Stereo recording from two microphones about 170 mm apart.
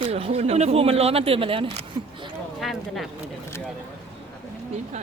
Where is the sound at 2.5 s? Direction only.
Centre (ahead or behind).